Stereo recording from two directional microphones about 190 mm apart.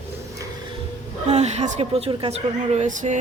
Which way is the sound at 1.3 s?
35° right (ahead or behind).